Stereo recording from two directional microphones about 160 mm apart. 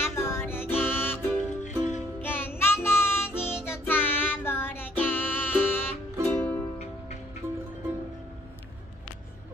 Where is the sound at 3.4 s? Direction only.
5° right (ahead or behind).